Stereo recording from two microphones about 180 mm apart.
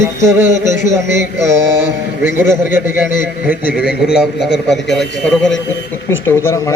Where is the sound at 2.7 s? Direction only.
10° right (ahead or behind).